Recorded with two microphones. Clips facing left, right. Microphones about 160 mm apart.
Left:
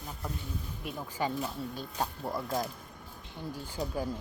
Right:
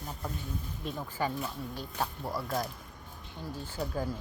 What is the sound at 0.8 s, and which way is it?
A woman's voice, 10° left (ahead or behind).